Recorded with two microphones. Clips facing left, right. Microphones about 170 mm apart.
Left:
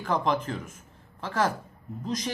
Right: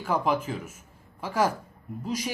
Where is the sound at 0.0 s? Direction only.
5° right (ahead or behind).